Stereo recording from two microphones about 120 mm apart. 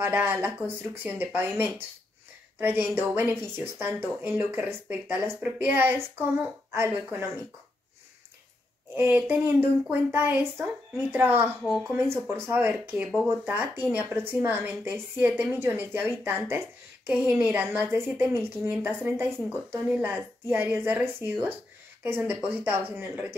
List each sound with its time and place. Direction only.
0.0 s speech: 15° right (ahead or behind)
8.9 s speech: 20° right (ahead or behind)